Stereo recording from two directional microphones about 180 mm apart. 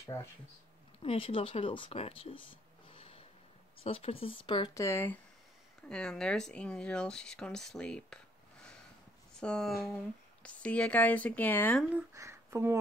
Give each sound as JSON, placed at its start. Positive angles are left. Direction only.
{"t": 0.0, "sound": "speech", "side_deg": 15}
{"t": 1.0, "sound": "speech", "side_deg": 30}
{"t": 9.4, "sound": "speech", "side_deg": 5}
{"t": 11.9, "sound": "speech", "side_deg": -15}